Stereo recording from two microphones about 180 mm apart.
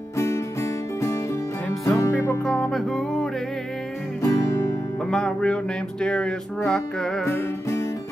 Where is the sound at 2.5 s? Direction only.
5° left (ahead or behind).